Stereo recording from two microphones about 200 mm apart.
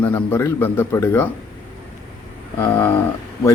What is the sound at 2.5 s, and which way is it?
Speech, 15° left (ahead or behind).